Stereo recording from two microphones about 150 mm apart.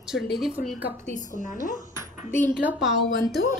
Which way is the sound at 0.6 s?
70° left (ahead or behind).